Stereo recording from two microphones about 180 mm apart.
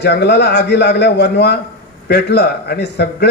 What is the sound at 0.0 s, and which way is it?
A man's voice, 70° left (ahead or behind).